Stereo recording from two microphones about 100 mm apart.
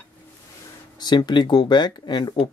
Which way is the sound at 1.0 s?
45° left (ahead or behind).